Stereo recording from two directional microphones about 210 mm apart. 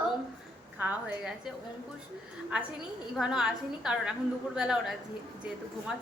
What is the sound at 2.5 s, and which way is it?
A woman's voice, 5° right (ahead or behind).